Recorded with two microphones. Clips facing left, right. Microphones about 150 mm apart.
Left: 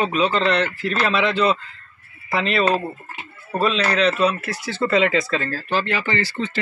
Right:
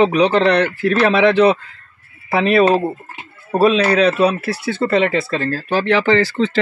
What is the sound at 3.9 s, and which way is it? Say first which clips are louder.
Speech: right 5 dB; 65° right (ahead or behind).